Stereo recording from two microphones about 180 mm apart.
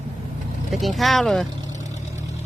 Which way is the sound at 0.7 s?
Centre (ahead or behind).